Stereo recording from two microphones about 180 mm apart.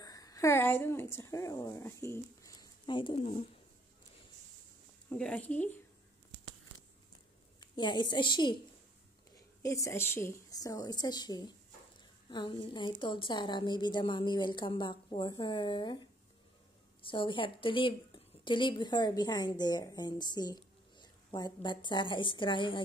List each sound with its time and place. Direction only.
0.0 s speech: 20° left (ahead or behind); by 3.4 s 35° left (ahead or behind)
5.1 s speech: 5° left (ahead or behind)
7.6 s a woman's voice: 25° left (ahead or behind)
9.6 s a woman's voice: 15° left (ahead or behind)
17.0 s a woman's voice: 30° left (ahead or behind)